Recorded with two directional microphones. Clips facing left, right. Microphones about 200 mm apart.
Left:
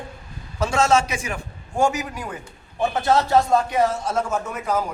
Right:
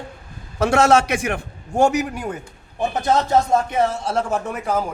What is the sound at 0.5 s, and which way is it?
A man's voice, 60° right (ahead or behind).